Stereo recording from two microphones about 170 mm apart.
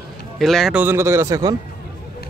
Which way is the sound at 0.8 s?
15° right (ahead or behind).